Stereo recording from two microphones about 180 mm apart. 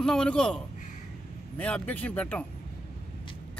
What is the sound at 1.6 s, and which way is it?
Speech, 5° left (ahead or behind).